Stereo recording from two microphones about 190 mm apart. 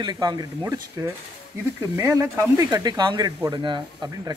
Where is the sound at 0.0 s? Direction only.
25° right (ahead or behind).